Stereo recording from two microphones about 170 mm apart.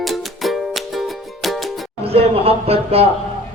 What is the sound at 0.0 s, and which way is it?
Music, centre (ahead or behind).